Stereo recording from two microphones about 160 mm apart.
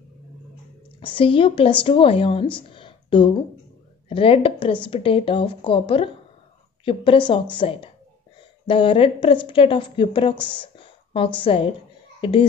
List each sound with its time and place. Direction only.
0.9 s a woman's voice: 35° left (ahead or behind)